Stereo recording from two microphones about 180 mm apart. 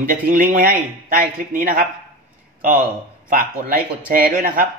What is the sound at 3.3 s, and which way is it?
Speech, 50° right (ahead or behind).